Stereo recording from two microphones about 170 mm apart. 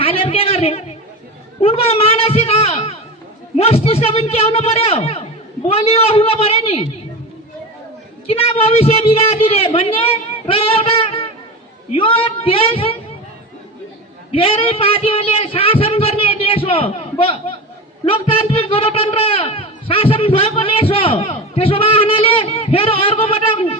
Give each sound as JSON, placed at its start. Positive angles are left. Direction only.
{"t": 0.0, "sound": "a sound", "side_deg": 35}
{"t": 1.6, "sound": "a man's voice", "side_deg": 35}
{"t": 8.3, "sound": "a man's voice", "side_deg": 35}
{"t": 14.3, "sound": "a man's voice", "side_deg": 35}